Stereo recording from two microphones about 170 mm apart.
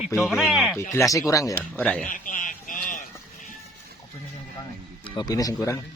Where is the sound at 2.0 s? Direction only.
50° left (ahead or behind).